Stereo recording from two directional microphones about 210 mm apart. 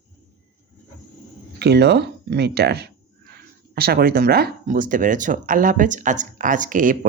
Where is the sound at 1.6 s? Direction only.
50° right (ahead or behind).